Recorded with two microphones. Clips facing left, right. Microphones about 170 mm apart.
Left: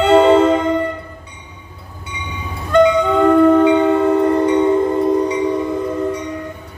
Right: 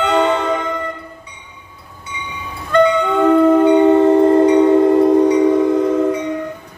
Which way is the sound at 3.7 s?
20° right (ahead or behind).